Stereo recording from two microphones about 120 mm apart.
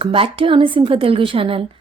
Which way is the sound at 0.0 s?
45° right (ahead or behind).